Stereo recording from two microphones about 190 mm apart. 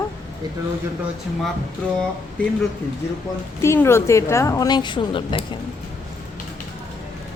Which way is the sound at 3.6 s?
15° left (ahead or behind).